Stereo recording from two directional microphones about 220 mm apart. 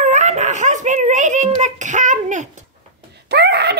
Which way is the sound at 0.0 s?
35° right (ahead or behind).